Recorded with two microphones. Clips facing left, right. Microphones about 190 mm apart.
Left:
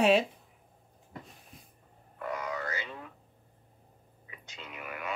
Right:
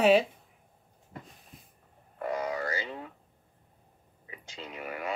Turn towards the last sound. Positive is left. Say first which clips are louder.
# right 4 dB
turn(degrees=-30)  # may be behind; listen again after turning